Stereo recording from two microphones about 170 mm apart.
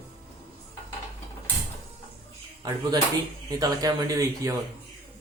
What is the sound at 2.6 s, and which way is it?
Speech, 20° right (ahead or behind).